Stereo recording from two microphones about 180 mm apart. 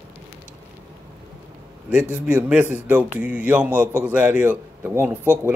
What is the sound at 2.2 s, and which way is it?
A man's voice, 5° right (ahead or behind).